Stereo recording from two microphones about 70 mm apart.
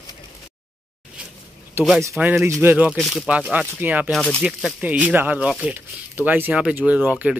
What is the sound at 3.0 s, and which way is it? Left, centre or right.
Speech, centre.